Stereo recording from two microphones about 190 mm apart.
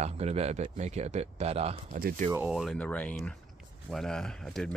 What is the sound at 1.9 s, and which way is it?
Speech, 50° right (ahead or behind).